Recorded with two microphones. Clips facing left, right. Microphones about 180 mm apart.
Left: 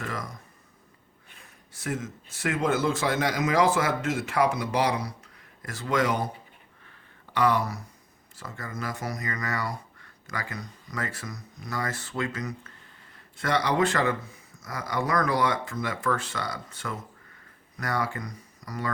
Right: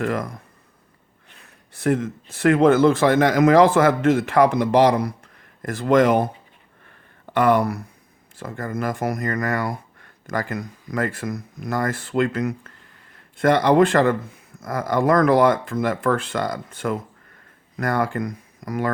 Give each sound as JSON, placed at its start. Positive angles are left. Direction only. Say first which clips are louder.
{"t": 0.0, "sound": "speech", "louder": "right 11 dB", "side_deg": -55}
{"t": 1.8, "sound": "speech", "louder": "right 11 dB", "side_deg": -60}
{"t": 7.3, "sound": "speech", "louder": "right 7 dB", "side_deg": -55}